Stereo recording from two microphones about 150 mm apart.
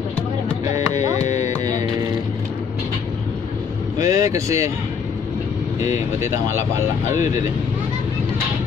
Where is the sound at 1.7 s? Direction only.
25° right (ahead or behind).